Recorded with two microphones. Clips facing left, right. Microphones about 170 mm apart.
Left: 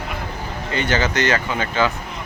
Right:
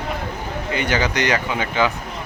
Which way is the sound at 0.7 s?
15° right (ahead or behind).